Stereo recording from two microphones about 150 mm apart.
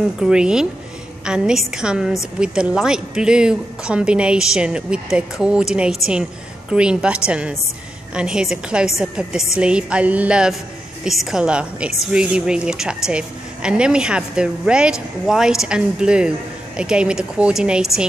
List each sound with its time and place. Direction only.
0.2 s a woman's voice: 5° right (ahead or behind)
6.7 s music: 5° right (ahead or behind)
8.1 s a woman's voice: 5° right (ahead or behind)
9.6 s music: 5° right (ahead or behind)
11.1 s a woman's voice: centre (ahead or behind)